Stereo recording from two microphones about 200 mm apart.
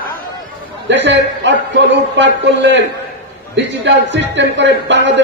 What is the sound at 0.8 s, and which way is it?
A man's voice, 65° right (ahead or behind).